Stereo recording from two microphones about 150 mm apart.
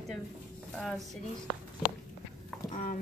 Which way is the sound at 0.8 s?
Centre (ahead or behind).